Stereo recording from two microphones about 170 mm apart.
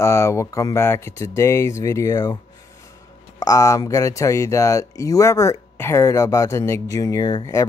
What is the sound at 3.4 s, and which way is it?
Speech, 20° left (ahead or behind).